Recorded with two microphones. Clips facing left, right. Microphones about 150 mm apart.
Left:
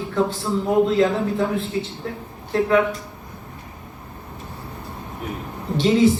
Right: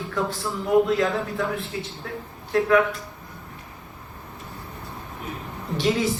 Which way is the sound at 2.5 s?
30° left (ahead or behind).